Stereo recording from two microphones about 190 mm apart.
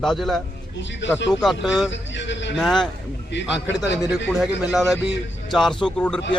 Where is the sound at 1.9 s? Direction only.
70° left (ahead or behind).